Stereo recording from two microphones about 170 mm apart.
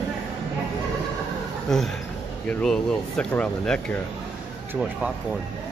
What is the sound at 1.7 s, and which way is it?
Speech, centre (ahead or behind).